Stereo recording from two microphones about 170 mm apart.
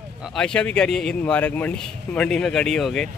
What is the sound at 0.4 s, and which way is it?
Speech, 5° left (ahead or behind).